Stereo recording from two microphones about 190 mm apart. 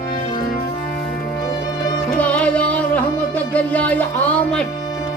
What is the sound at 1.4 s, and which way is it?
Music, 20° left (ahead or behind).